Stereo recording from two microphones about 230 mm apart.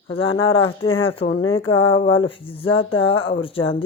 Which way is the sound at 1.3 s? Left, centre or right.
Left.